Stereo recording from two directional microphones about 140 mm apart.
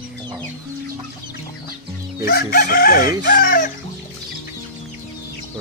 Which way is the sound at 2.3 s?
90° left.